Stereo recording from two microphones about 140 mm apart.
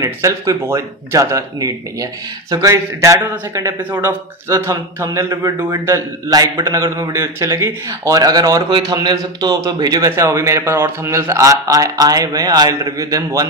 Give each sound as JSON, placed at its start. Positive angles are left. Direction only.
{"t": 0.0, "sound": "a man's voice", "side_deg": -20}